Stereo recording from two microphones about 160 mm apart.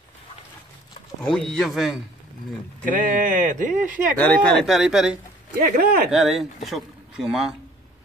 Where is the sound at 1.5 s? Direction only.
Centre (ahead or behind).